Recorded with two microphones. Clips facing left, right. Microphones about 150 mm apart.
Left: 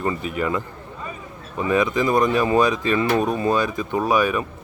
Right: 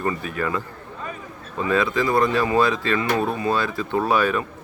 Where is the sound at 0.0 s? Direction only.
20° left (ahead or behind).